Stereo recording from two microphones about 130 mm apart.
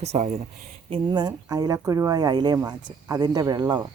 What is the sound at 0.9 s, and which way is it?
Speech, 35° right (ahead or behind).